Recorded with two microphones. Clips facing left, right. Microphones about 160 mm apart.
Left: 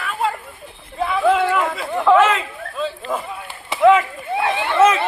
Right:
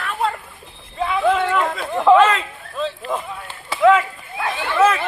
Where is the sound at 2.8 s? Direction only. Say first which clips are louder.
Even; 5° left (ahead or behind).